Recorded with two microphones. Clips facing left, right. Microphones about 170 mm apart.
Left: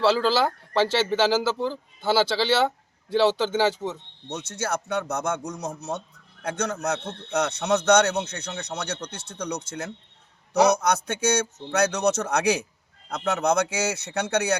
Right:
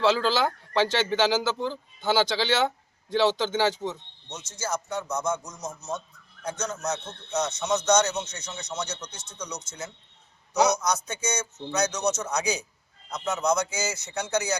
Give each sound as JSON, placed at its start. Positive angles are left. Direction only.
{"t": 0.0, "sound": "speech", "side_deg": 5}
{"t": 4.3, "sound": "a man's voice", "side_deg": 65}